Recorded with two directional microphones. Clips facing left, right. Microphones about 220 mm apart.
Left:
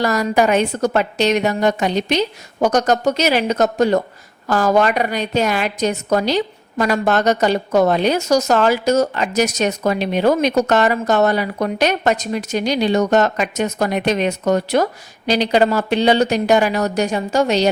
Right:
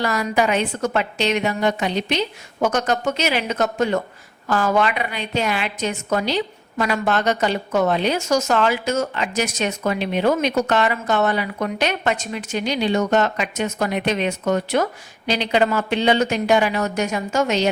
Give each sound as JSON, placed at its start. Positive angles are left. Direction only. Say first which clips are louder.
{"t": 0.0, "sound": "a woman's voice", "louder": "left 4 dB", "side_deg": 40}